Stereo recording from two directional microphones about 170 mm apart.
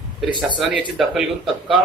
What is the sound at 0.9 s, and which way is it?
Speech, centre (ahead or behind).